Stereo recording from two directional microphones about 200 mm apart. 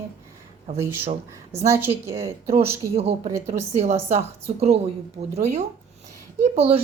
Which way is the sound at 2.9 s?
30° right (ahead or behind).